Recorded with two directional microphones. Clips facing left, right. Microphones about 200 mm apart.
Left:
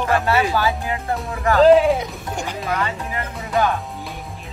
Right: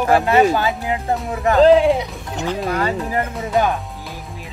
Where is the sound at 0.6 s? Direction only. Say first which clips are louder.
Right 1 dB; 20° right (ahead or behind).